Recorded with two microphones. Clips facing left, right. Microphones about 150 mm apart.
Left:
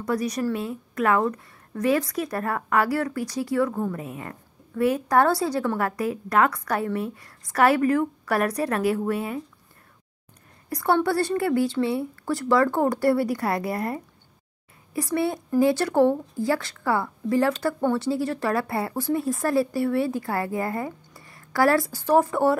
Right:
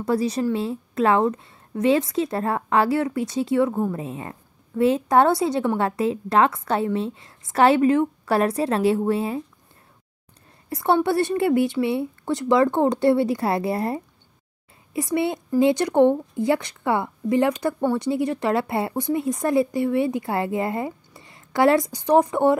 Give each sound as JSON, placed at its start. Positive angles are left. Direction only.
{"t": 0.0, "sound": "a woman's voice", "side_deg": -25}
{"t": 10.7, "sound": "a woman's voice", "side_deg": -25}